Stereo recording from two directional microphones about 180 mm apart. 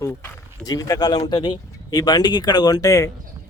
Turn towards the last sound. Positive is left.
turn(degrees=20)  # may be behind; listen again after turning